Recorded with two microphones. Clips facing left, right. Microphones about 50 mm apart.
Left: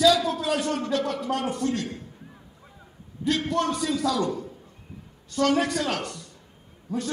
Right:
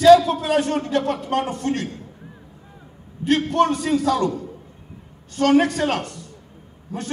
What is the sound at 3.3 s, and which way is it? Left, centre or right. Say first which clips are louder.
A man's voice: right 6 dB; right.